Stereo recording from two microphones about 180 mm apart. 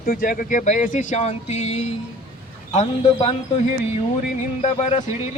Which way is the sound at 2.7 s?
30° left (ahead or behind).